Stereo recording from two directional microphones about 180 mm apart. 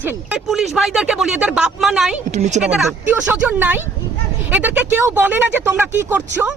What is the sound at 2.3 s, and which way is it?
Speech, 40° right (ahead or behind).